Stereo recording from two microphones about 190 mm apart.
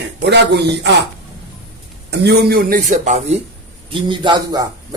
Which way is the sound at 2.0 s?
60° right (ahead or behind).